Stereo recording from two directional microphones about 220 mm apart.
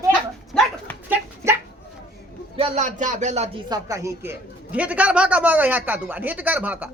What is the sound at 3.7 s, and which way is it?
A man's voice, 15° right (ahead or behind).